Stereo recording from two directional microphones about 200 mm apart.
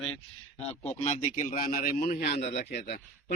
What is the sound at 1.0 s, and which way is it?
A man's voice, 35° left (ahead or behind).